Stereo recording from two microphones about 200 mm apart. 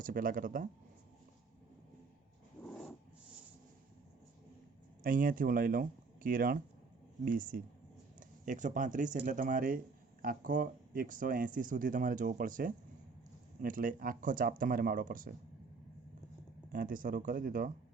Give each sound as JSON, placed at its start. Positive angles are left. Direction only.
{"t": 0.0, "sound": "speech", "side_deg": -45}
{"t": 2.6, "sound": "dog", "side_deg": 0}
{"t": 5.0, "sound": "speech", "side_deg": -45}
{"t": 16.7, "sound": "speech", "side_deg": -45}